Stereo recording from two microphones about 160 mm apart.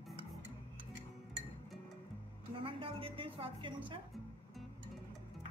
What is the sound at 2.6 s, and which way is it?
A woman's voice, 35° right (ahead or behind).